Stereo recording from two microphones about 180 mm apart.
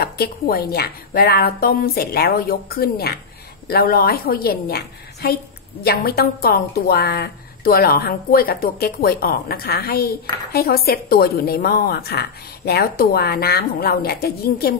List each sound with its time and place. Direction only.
0.0 s a woman's voice: 55° left (ahead or behind)